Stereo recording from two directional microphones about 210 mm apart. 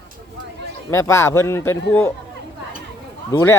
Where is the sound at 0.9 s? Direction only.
15° left (ahead or behind).